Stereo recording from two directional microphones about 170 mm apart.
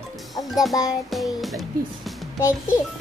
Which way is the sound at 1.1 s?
Centre (ahead or behind).